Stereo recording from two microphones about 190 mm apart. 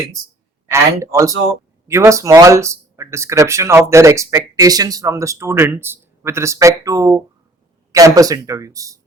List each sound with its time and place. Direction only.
0.7 s speech: 15° right (ahead or behind)